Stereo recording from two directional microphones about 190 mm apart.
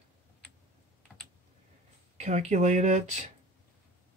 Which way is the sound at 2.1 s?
35° right (ahead or behind).